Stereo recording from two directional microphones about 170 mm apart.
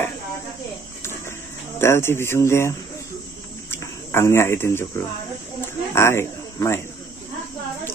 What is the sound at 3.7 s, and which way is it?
A man's voice, 15° left (ahead or behind).